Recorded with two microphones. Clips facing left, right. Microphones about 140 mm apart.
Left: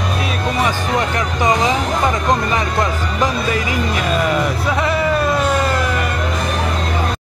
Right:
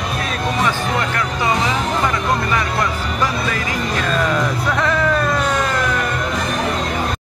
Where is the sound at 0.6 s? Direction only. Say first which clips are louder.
Left 2 dB; 20° left (ahead or behind).